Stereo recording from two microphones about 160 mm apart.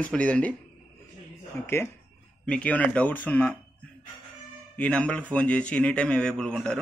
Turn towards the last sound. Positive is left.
turn(degrees=5)  # may be behind; listen again after turning